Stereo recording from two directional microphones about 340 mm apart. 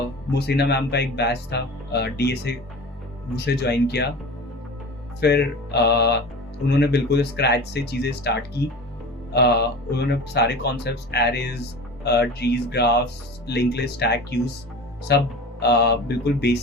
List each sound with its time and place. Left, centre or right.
0.3 s speech: left
5.2 s speech: left